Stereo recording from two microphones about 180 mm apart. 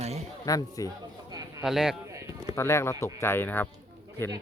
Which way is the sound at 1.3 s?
20° right (ahead or behind).